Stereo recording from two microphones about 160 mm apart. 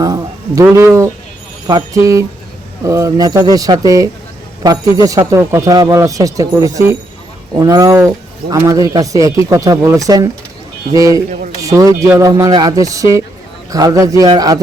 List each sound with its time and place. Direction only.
0.0 s speech: 20° right (ahead or behind)